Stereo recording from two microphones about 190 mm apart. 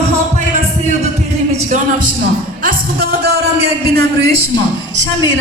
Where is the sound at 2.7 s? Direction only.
50° right (ahead or behind).